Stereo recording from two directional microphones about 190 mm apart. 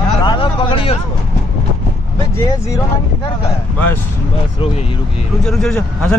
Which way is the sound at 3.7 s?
10° left (ahead or behind).